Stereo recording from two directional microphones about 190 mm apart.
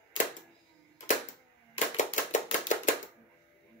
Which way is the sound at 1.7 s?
40° left (ahead or behind).